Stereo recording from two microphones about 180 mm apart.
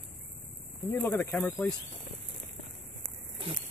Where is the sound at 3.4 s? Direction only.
30° right (ahead or behind).